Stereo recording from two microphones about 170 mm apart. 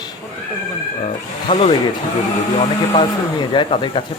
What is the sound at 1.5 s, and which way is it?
Speech, 30° left (ahead or behind).